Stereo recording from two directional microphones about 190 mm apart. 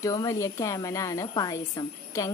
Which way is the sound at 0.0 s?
20° left (ahead or behind).